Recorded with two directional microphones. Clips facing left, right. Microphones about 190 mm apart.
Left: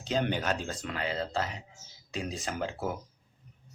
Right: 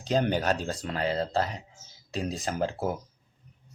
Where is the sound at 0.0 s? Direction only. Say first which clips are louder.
Right 4 dB; 40° right (ahead or behind).